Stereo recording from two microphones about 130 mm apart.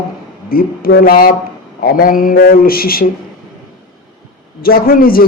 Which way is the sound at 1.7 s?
90° left.